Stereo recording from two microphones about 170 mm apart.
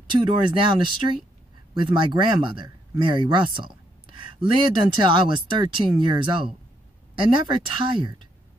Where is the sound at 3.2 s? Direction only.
30° right (ahead or behind).